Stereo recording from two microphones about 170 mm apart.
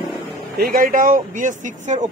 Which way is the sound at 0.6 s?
55° right (ahead or behind).